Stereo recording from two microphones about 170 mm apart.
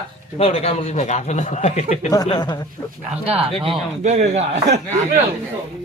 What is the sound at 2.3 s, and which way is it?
Speech, 25° left (ahead or behind).